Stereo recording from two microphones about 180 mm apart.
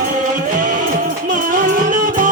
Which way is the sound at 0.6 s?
45° right (ahead or behind).